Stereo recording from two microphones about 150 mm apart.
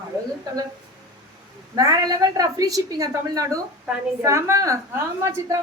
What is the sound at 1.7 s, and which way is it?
A woman's voice, 25° right (ahead or behind).